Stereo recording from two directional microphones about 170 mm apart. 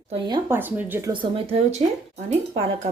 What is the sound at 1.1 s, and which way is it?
Speech, 30° right (ahead or behind).